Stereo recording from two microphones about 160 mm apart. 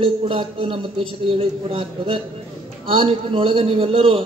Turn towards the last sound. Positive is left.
turn(degrees=-35)  # may be behind; listen again after turning